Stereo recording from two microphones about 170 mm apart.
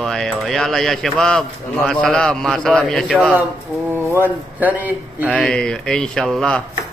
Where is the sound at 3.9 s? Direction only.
10° right (ahead or behind).